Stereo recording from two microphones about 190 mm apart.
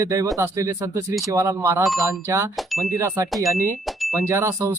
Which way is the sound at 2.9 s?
15° right (ahead or behind).